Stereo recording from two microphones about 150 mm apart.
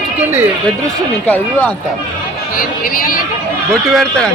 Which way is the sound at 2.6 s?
70° left (ahead or behind).